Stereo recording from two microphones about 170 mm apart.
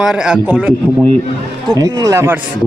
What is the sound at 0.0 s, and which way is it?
Speech, 5° right (ahead or behind).